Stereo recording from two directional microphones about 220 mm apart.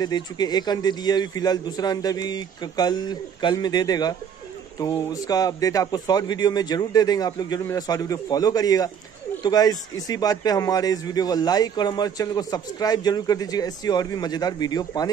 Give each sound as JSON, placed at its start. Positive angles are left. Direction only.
{"t": 0.0, "sound": "a man's voice", "side_deg": 20}